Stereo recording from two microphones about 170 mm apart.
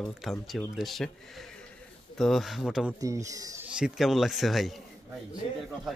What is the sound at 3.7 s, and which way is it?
Speech, 5° right (ahead or behind).